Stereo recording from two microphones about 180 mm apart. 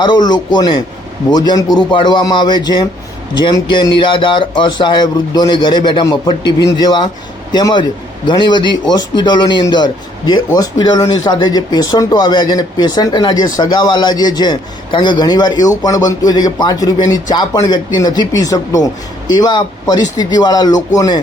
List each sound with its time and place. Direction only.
0.0 s a man's voice: 25° left (ahead or behind)